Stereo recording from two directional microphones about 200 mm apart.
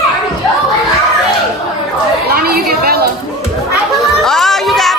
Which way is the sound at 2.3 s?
50° right (ahead or behind).